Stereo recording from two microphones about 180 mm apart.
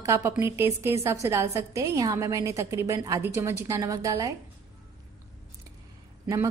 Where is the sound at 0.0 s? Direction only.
15° right (ahead or behind).